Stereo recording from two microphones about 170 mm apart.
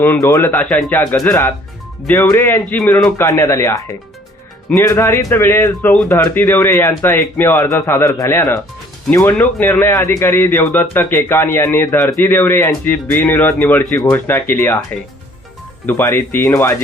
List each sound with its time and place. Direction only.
0.0 s a man's voice: 15° left (ahead or behind)
15.9 s a man's voice: 10° left (ahead or behind)